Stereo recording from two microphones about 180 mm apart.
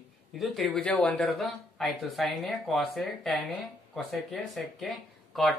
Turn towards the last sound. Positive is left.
turn(degrees=0)  # may be behind; listen again after turning